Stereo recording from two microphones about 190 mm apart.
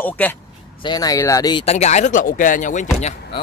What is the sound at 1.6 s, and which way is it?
Speech, 35° left (ahead or behind).